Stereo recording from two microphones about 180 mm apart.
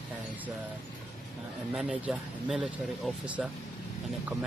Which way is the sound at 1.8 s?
5° right (ahead or behind).